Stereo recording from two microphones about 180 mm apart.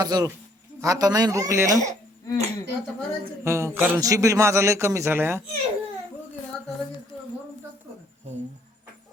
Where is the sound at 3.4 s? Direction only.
15° right (ahead or behind).